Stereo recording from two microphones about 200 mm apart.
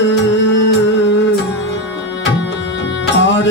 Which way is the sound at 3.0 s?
60° left (ahead or behind).